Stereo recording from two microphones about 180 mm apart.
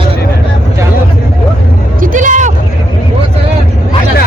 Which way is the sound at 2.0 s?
45° right (ahead or behind).